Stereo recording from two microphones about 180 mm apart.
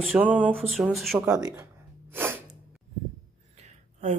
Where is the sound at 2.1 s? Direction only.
10° right (ahead or behind).